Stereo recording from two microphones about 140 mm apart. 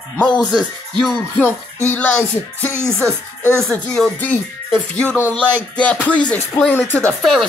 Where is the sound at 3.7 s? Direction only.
5° left (ahead or behind).